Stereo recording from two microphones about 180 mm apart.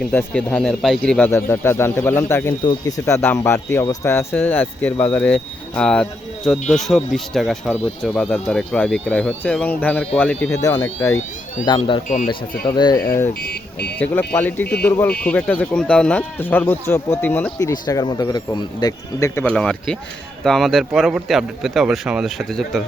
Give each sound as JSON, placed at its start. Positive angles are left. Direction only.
{"t": 0.0, "sound": "speech", "side_deg": 10}
{"t": 11.6, "sound": "speech", "side_deg": 25}
{"t": 12.0, "sound": "speech", "side_deg": 45}
{"t": 12.6, "sound": "speech", "side_deg": 25}
{"t": 13.4, "sound": "speech", "side_deg": 65}
{"t": 14.0, "sound": "speech", "side_deg": 10}